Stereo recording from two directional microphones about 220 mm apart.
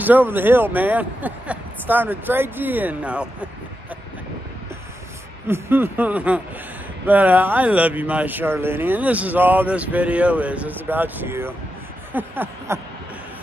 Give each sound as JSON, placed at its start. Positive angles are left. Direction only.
{"t": 0.0, "sound": "speech", "side_deg": -10}
{"t": 5.5, "sound": "speech", "side_deg": -10}